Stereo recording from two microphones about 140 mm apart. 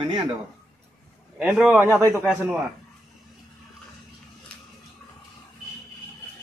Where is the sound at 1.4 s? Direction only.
5° right (ahead or behind).